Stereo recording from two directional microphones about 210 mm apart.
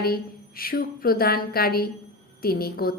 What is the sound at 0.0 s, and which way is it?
A woman's voice, 45° left (ahead or behind).